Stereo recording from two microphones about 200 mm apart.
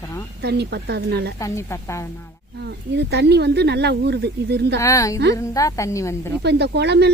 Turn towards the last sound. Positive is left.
turn(degrees=-55)  # may be behind; listen again after turning